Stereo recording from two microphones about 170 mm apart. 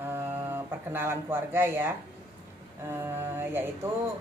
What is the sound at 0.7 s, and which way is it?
Speech, 15° right (ahead or behind).